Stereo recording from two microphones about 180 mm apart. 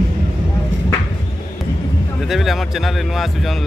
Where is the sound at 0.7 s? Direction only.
90° right.